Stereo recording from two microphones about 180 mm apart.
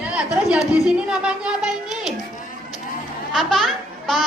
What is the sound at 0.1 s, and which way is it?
A child's voice, 5° right (ahead or behind).